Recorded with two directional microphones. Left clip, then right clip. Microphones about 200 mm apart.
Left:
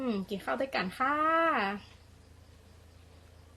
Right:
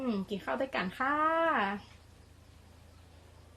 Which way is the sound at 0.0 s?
15° left (ahead or behind).